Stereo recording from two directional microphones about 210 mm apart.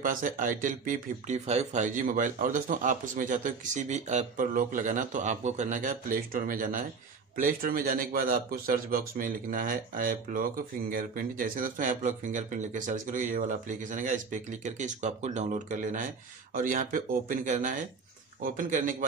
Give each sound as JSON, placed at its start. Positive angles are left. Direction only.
{"t": 0.0, "sound": "a man's voice", "side_deg": -40}